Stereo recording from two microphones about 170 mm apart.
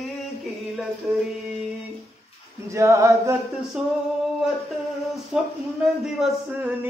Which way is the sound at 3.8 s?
Centre (ahead or behind).